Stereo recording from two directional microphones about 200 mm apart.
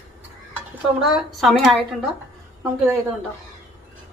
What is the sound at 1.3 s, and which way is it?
Speech, centre (ahead or behind).